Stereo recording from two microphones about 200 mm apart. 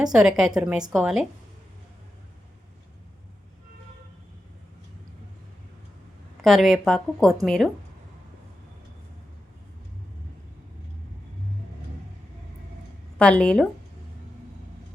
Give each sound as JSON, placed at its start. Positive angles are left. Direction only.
{"t": 0.0, "sound": "a woman's voice", "side_deg": -5}
{"t": 6.4, "sound": "a woman's voice", "side_deg": 0}
{"t": 13.1, "sound": "a woman's voice", "side_deg": 5}